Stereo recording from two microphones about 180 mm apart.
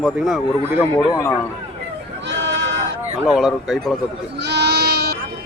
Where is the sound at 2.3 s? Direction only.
85° right.